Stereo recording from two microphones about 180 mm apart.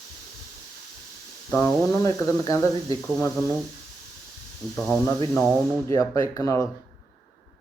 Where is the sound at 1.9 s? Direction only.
20° left (ahead or behind).